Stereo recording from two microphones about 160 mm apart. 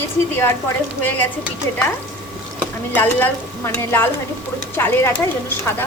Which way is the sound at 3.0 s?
10° left (ahead or behind).